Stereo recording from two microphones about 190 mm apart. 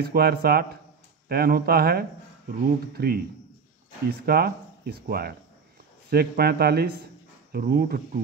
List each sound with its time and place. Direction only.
0.0 s speech: 55° right (ahead or behind)